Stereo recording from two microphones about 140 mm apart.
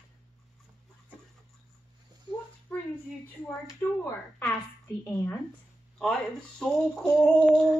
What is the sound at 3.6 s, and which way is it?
A woman's voice, 20° left (ahead or behind).